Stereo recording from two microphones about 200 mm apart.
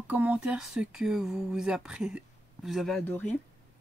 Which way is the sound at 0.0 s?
10° right (ahead or behind).